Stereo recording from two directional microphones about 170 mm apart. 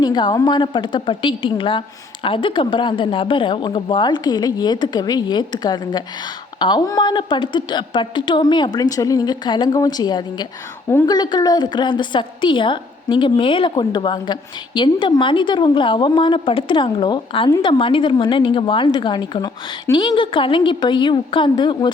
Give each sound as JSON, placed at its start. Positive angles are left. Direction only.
{"t": 0.0, "sound": "a woman's voice", "side_deg": 25}